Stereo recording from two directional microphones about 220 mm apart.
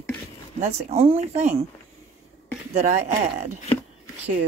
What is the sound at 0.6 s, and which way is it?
Speech, 30° right (ahead or behind).